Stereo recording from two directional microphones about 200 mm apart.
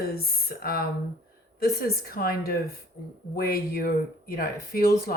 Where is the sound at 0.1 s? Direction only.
50° left (ahead or behind).